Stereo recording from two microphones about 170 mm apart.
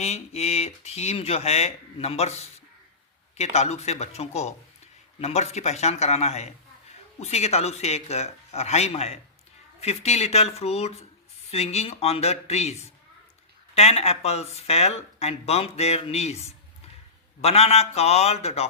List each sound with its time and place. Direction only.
0.0 s speech: 40° left (ahead or behind)